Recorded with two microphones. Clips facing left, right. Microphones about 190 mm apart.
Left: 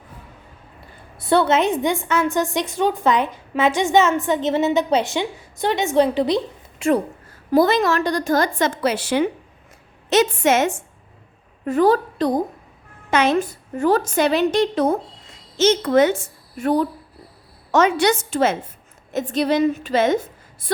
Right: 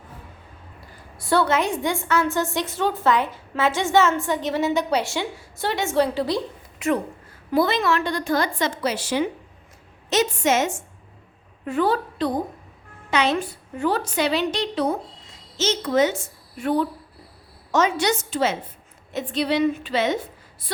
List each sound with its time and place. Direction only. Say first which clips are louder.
1.2 s a woman's voice: left 4 dB; 20° left (ahead or behind)
7.5 s a woman's voice: left 4 dB; 40° left (ahead or behind); by 10.8 s 60° left (ahead or behind)
11.6 s a woman's voice: left 5 dB; 40° left (ahead or behind)
17.7 s a woman's voice: left 4 dB; 60° left (ahead or behind)